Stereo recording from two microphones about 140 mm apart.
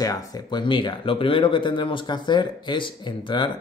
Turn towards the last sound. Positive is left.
turn(degrees=35)  # may be behind; listen again after turning